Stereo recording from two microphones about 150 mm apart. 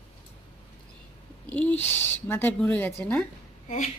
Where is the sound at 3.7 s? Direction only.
50° left (ahead or behind).